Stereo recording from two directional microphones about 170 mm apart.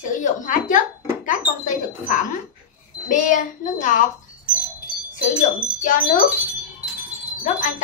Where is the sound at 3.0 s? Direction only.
50° left (ahead or behind).